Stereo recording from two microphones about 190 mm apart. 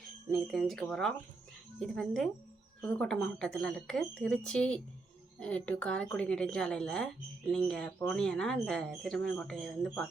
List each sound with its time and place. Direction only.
0.3 s speech: centre (ahead or behind)